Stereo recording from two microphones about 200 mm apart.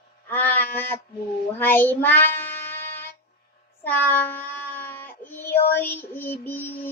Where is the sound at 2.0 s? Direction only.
10° left (ahead or behind).